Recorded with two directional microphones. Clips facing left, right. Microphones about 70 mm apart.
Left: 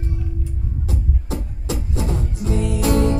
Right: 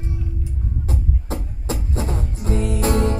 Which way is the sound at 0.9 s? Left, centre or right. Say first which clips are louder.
Left 1 dB; right.